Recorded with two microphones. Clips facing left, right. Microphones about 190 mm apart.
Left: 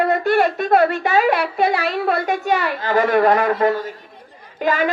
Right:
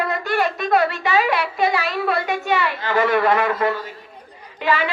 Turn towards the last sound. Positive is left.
turn(degrees=45)  # may be behind; listen again after turning